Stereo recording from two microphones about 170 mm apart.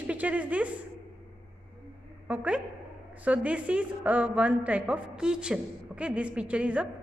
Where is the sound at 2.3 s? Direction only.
10° right (ahead or behind).